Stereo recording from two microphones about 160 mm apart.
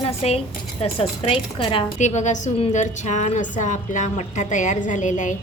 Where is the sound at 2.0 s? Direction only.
45° left (ahead or behind).